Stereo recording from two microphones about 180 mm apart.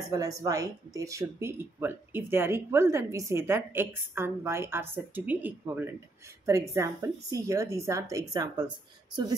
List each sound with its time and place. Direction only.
0.0 s speech: 20° right (ahead or behind)